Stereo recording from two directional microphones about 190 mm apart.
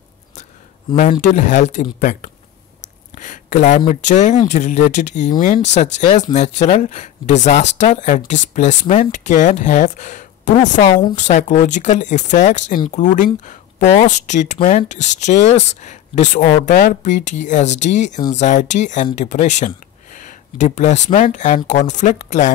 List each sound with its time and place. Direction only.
1.2 s speech: 40° left (ahead or behind)